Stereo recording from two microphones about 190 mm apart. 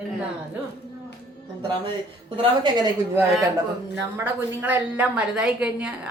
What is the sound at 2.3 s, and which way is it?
Speech, 25° right (ahead or behind).